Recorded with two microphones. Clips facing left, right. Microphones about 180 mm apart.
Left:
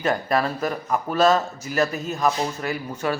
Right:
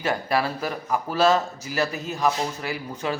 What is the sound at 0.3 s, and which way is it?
Speech, 10° right (ahead or behind).